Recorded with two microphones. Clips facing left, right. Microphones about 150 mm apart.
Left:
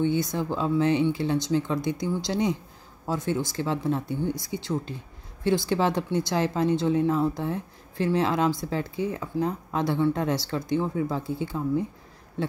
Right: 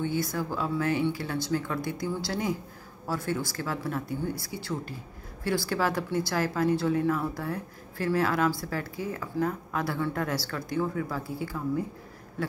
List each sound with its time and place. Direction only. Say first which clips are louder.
0.0 s speech: left 4 dB; 20° left (ahead or behind)